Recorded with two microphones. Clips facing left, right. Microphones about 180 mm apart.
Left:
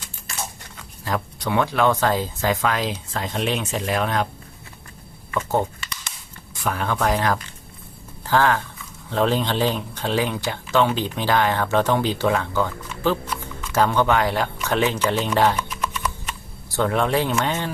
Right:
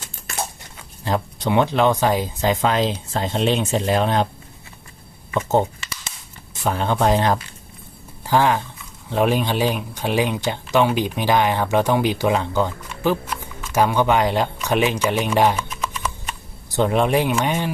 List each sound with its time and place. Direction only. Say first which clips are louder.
1.0 s speech: right 3 dB; 25° right (ahead or behind)
5.3 s speech: right 3 dB; 20° right (ahead or behind)
8.2 s speech: right 1 dB; 15° right (ahead or behind)